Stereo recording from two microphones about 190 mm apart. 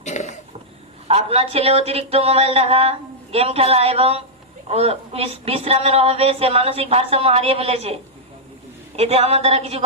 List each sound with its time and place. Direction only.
0.0 s a sound: 40° left (ahead or behind)
1.0 s speech: 30° right (ahead or behind)
9.0 s speech: 35° right (ahead or behind)